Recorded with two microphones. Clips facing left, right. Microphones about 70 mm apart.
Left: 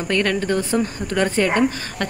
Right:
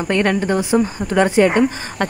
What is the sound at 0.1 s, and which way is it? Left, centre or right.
A woman's voice, right.